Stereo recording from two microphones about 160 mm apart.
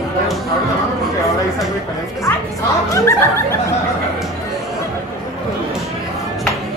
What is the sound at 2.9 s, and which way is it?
Laughter, 20° left (ahead or behind).